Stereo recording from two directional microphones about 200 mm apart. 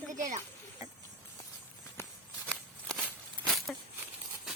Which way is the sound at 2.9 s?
Centre (ahead or behind).